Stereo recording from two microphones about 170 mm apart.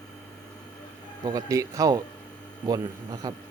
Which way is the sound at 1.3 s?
20° right (ahead or behind).